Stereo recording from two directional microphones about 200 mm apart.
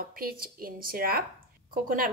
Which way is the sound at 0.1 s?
45° right (ahead or behind).